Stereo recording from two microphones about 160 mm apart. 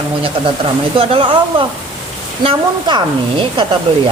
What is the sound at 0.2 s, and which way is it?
Speech, 35° right (ahead or behind).